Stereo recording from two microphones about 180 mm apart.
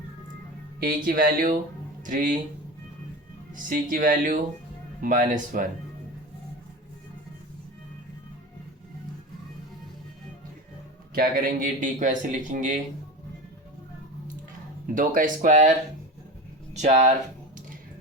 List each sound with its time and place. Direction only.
0.8 s a man's voice: 50° right (ahead or behind)
3.5 s a man's voice: 50° right (ahead or behind)
11.1 s a man's voice: 55° right (ahead or behind)
14.9 s a man's voice: 50° right (ahead or behind)
16.7 s speech: 40° right (ahead or behind)